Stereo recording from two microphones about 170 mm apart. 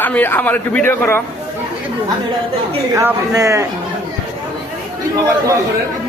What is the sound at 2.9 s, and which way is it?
Speech, 15° right (ahead or behind).